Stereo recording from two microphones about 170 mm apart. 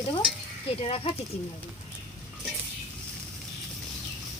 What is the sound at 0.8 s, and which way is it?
Speech, 35° left (ahead or behind).